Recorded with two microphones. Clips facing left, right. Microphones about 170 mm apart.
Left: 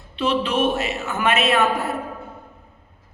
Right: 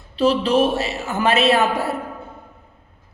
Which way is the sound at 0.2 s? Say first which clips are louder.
Right 4 dB; 35° right (ahead or behind).